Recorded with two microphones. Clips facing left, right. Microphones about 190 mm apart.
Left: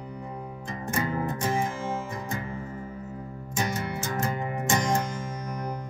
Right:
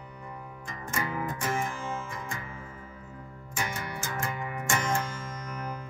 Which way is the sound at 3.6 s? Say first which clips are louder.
Left 5 dB; 40° left (ahead or behind).